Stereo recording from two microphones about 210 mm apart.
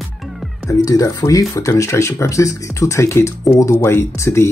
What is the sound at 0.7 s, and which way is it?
Speech, 15° left (ahead or behind).